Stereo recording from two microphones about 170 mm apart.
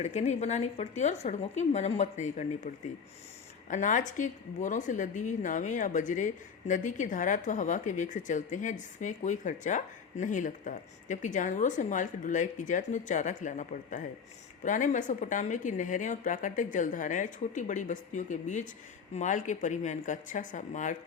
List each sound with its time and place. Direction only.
0.0 s a woman's voice: 40° left (ahead or behind)